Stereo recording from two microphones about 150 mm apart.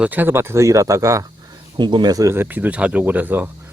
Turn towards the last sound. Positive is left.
turn(degrees=-10)  # may be behind; listen again after turning